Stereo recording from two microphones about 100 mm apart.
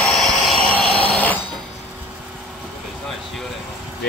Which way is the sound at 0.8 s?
70° left (ahead or behind).